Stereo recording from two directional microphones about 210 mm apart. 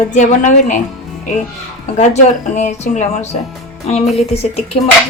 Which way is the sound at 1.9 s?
35° left (ahead or behind).